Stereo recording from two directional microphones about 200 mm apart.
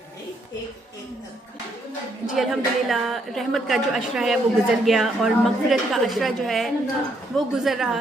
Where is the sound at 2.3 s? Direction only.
Centre (ahead or behind).